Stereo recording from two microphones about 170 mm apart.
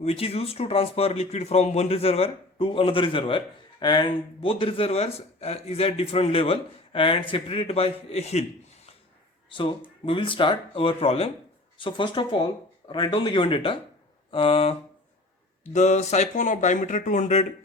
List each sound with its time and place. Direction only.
0.0 s speech: 35° left (ahead or behind)
9.5 s speech: 30° left (ahead or behind); by 17.4 s 45° left (ahead or behind)